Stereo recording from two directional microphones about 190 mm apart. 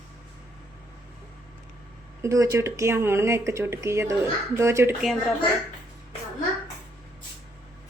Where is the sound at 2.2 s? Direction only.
15° right (ahead or behind).